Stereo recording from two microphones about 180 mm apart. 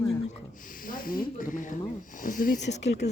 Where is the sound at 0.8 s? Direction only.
50° left (ahead or behind).